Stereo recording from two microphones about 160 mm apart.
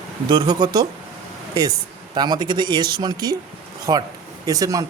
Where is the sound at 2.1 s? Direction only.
25° right (ahead or behind).